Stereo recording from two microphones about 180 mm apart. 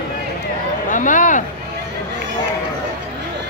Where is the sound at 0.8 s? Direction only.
45° left (ahead or behind).